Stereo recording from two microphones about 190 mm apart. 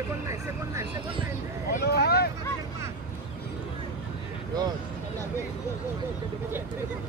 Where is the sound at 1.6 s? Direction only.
55° left (ahead or behind).